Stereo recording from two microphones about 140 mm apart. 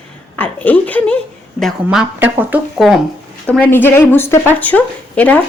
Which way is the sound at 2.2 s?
15° right (ahead or behind).